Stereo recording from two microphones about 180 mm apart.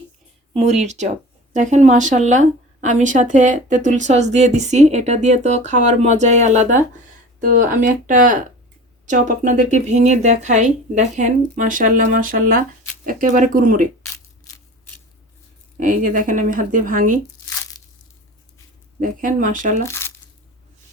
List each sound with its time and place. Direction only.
0.5 s speech: 40° right (ahead or behind)
15.8 s speech: 50° right (ahead or behind)
18.9 s speech: 45° right (ahead or behind)
19.8 s crumpling: 15° left (ahead or behind)